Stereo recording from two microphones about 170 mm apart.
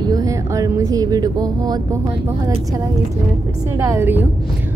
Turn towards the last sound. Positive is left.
turn(degrees=-15)  # may be behind; listen again after turning